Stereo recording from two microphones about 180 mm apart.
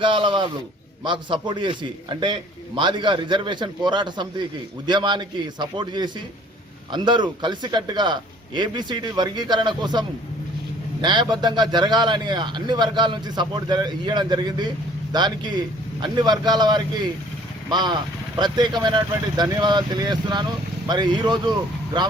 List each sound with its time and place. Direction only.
0.0 s speech: 25° right (ahead or behind)